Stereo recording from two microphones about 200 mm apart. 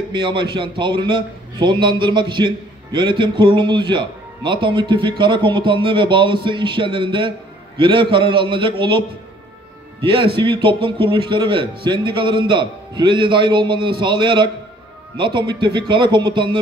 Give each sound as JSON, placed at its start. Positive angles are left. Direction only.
{"t": 0.1, "sound": "a man's voice", "side_deg": -25}
{"t": 10.0, "sound": "a man's voice", "side_deg": -25}